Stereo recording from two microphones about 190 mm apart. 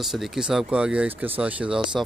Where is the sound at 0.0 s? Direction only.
Centre (ahead or behind).